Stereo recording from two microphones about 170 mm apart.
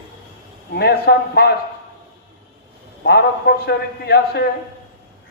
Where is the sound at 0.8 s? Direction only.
70° left (ahead or behind).